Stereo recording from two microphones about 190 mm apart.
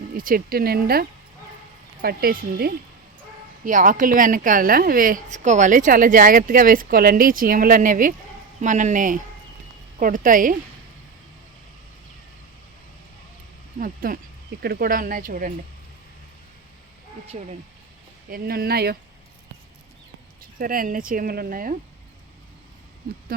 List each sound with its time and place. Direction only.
0.1 s speech: 50° right (ahead or behind)
13.7 s speech: 45° right (ahead or behind)
17.3 s speech: 35° right (ahead or behind)
18.3 s speech: 50° right (ahead or behind)
20.6 s speech: 50° right (ahead or behind)